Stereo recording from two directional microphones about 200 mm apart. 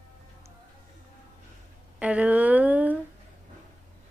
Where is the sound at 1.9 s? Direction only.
5° right (ahead or behind).